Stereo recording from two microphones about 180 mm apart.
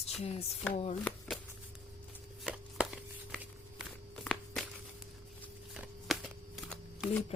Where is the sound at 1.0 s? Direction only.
5° left (ahead or behind).